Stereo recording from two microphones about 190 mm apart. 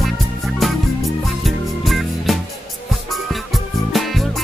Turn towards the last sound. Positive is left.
turn(degrees=0)  # may be behind; listen again after turning